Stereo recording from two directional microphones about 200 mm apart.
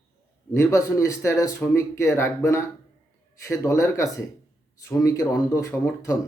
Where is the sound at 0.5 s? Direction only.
15° left (ahead or behind).